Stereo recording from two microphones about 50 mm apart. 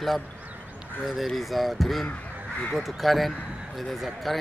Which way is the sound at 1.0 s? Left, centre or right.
Centre.